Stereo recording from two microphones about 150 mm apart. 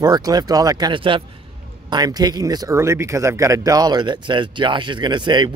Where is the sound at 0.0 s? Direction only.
25° right (ahead or behind).